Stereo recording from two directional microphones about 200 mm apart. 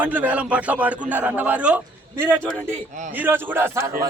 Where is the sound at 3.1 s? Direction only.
10° right (ahead or behind).